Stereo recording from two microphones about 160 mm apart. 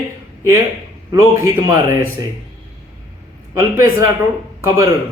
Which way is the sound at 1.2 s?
20° right (ahead or behind).